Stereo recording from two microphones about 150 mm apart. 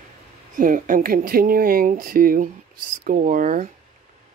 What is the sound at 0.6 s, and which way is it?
Speech, 65° right (ahead or behind).